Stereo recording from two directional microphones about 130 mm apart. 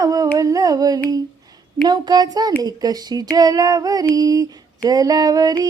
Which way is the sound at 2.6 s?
30° right (ahead or behind).